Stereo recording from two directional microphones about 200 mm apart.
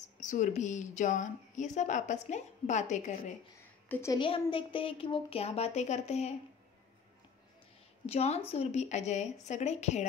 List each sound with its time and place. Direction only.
0.2 s a woman's voice: 35° left (ahead or behind)
3.9 s a woman's voice: 15° left (ahead or behind)
4.2 s a woman's voice: 25° left (ahead or behind)
8.1 s a woman's voice: 30° left (ahead or behind)